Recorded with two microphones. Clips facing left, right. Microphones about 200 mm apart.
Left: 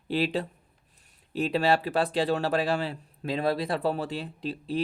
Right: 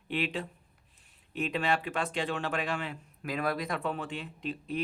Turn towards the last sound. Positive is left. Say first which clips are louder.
# left 4 dB
turn(degrees=35)  # may be behind; listen again after turning